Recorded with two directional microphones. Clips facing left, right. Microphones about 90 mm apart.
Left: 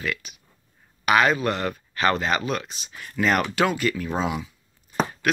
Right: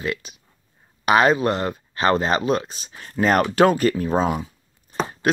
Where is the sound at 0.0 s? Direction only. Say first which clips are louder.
Right 3 dB; 30° right (ahead or behind).